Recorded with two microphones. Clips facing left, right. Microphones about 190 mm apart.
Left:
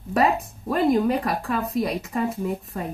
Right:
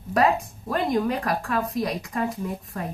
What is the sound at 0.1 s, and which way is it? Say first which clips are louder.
A woman's voice: even; centre (ahead or behind).